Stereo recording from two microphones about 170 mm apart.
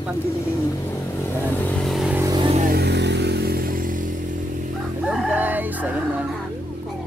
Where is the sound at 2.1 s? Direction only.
20° right (ahead or behind).